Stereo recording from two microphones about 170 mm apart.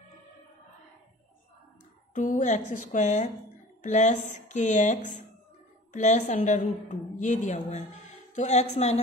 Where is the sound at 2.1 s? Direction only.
50° left (ahead or behind).